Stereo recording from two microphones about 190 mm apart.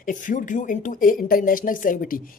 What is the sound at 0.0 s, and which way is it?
A woman's voice, 45° left (ahead or behind).